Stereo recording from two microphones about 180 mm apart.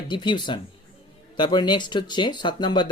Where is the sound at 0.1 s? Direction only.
25° left (ahead or behind).